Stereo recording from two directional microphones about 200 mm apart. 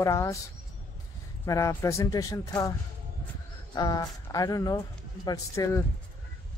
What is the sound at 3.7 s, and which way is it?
Speech, 20° left (ahead or behind).